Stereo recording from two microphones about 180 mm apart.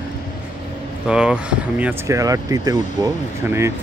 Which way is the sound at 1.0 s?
5° right (ahead or behind).